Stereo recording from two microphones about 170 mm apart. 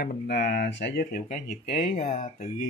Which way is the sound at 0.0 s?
75° left (ahead or behind).